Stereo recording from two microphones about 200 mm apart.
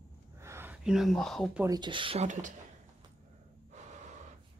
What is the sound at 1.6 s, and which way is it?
Speech, 20° right (ahead or behind).